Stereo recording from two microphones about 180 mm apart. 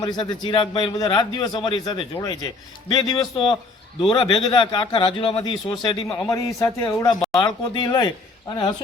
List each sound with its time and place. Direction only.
0.0 s a man's voice: 25° left (ahead or behind)
6.1 s speech: 5° left (ahead or behind)
6.3 s a man's voice: 15° left (ahead or behind)